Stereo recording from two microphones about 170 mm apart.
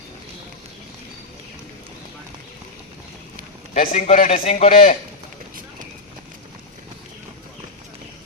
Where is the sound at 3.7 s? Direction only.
50° left (ahead or behind).